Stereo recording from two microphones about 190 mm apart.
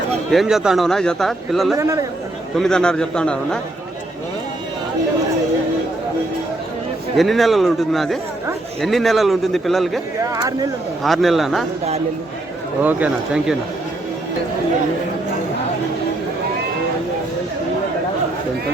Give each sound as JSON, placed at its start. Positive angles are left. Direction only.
{"t": 0.3, "sound": "speech", "side_deg": 0}
{"t": 1.7, "sound": "speech", "side_deg": -15}
{"t": 2.6, "sound": "speech", "side_deg": 5}
{"t": 7.2, "sound": "speech", "side_deg": 0}
{"t": 10.3, "sound": "speech", "side_deg": -20}
{"t": 11.0, "sound": "speech", "side_deg": 0}
{"t": 12.8, "sound": "speech", "side_deg": -10}